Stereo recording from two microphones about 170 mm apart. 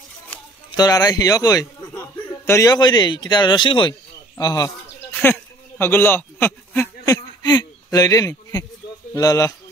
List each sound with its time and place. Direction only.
0.7 s a man's voice: 20° left (ahead or behind)
5.1 s a sound: 10° left (ahead or behind)
9.1 s a man's voice: 20° left (ahead or behind)